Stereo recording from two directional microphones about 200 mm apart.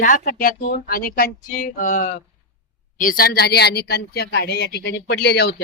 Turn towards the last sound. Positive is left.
turn(degrees=55)  # may be behind; listen again after turning